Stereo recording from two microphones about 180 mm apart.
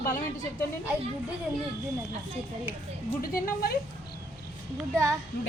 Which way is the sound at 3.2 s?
55° left (ahead or behind).